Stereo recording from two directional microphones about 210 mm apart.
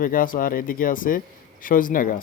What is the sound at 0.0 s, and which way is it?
Speech, 40° left (ahead or behind).